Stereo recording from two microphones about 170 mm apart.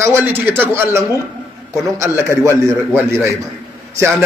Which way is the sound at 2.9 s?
15° right (ahead or behind).